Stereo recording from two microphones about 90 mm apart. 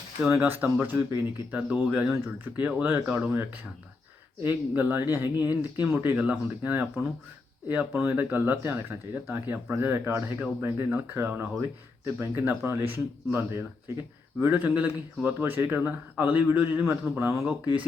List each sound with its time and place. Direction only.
0.3 s speech: 20° right (ahead or behind)